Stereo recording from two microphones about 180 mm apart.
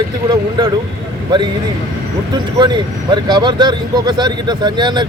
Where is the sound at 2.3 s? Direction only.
25° right (ahead or behind).